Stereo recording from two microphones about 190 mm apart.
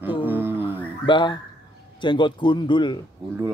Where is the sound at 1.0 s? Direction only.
25° left (ahead or behind).